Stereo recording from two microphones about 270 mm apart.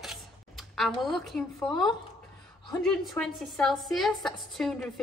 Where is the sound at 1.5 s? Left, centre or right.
Centre.